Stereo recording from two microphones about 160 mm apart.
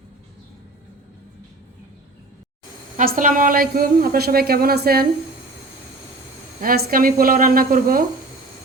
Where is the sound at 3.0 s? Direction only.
60° right (ahead or behind).